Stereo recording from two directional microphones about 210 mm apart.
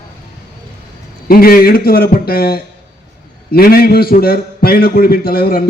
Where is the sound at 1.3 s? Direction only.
45° left (ahead or behind).